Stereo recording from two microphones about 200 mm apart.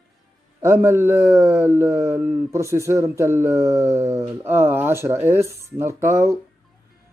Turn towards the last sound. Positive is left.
turn(degrees=-10)  # may be behind; listen again after turning